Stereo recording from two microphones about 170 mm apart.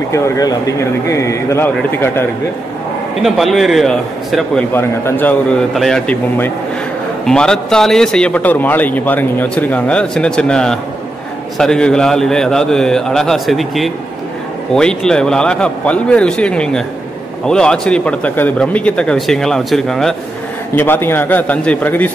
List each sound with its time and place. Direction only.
0.1 s a man's voice: 20° left (ahead or behind)
3.2 s speech: centre (ahead or behind)
4.7 s a man's voice: 10° left (ahead or behind)